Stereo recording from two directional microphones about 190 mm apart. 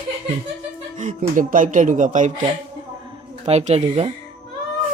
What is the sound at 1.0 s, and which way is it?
Speech, 40° right (ahead or behind).